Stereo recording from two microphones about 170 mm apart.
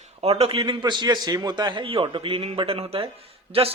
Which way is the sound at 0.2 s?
35° right (ahead or behind).